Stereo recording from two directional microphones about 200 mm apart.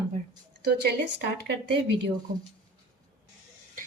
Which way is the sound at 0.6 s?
55° right (ahead or behind).